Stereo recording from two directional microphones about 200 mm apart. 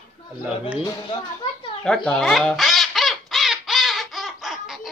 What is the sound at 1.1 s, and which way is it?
Speech, 25° left (ahead or behind).